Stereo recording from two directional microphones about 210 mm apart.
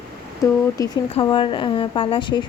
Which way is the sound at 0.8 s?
15° left (ahead or behind).